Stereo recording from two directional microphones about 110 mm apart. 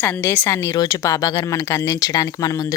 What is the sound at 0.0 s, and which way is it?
Speech, 20° left (ahead or behind).